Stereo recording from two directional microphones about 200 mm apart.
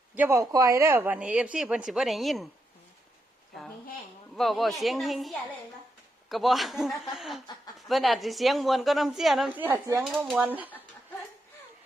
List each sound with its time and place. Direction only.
0.2 s speech: 15° right (ahead or behind)
4.4 s speech: centre (ahead or behind)